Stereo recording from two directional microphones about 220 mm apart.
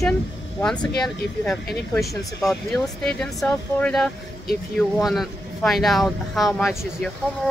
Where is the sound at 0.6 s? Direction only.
5° left (ahead or behind).